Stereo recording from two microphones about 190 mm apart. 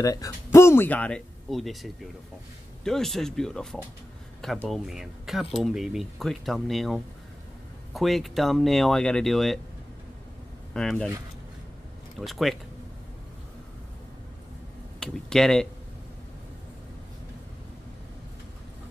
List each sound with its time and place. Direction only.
0.0 s speech: 20° left (ahead or behind); by 9.6 s centre (ahead or behind)
10.7 s speech: 5° left (ahead or behind)
12.2 s speech: centre (ahead or behind)
15.0 s speech: 5° left (ahead or behind)